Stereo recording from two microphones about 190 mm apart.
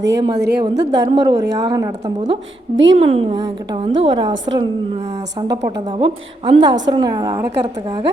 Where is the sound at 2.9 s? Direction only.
35° right (ahead or behind).